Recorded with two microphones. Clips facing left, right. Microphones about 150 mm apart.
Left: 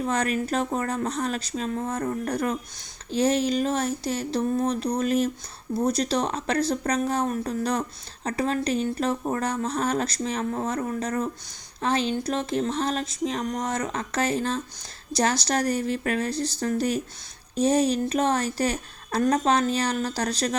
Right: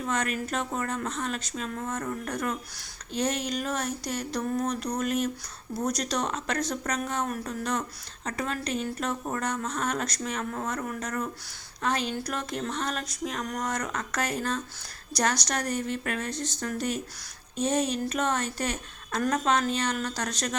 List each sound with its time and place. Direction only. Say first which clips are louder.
0.0 s a woman's voice: left 4 dB; 35° left (ahead or behind)
11.8 s a sound: left 4 dB; 30° left (ahead or behind)
15.1 s a woman's voice: left 4 dB; 30° left (ahead or behind)